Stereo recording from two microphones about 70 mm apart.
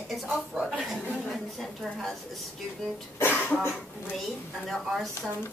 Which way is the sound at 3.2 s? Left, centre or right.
Left.